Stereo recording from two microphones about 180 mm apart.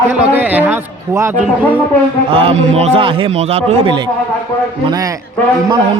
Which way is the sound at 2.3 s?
30° right (ahead or behind).